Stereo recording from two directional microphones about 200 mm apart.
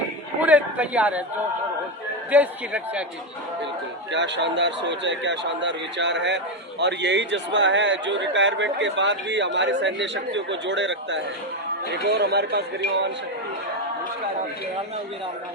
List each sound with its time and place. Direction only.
0.4 s a sound: 5° right (ahead or behind)
2.3 s a man's voice: 5° right (ahead or behind)
4.1 s a man's voice: 65° right (ahead or behind)